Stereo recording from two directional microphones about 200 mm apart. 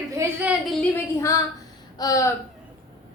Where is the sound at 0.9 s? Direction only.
15° left (ahead or behind).